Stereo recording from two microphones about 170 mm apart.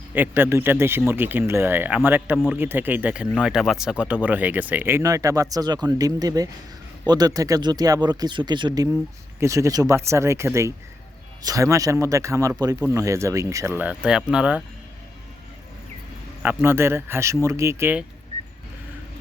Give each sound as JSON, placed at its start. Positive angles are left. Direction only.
{"t": 0.1, "sound": "speech", "side_deg": -10}
{"t": 16.4, "sound": "speech", "side_deg": -10}